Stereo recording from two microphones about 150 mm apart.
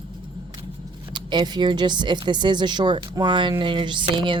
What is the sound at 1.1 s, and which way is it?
Speech, 30° right (ahead or behind).